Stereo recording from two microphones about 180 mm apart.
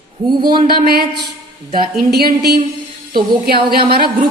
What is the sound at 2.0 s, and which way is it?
Speech, 60° right (ahead or behind).